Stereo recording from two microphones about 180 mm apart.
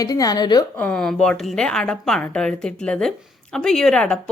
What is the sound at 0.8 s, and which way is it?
A woman's voice, 5° left (ahead or behind).